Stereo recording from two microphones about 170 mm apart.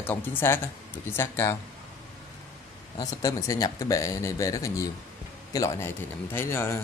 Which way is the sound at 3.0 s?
20° left (ahead or behind).